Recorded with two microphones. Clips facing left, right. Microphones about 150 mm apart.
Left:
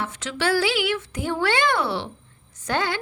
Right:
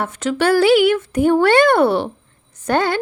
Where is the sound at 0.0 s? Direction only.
50° right (ahead or behind).